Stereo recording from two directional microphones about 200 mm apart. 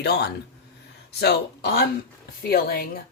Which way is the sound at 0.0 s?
55° left (ahead or behind).